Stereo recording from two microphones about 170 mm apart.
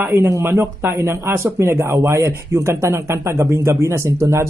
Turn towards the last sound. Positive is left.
turn(degrees=-20)  # may be behind; listen again after turning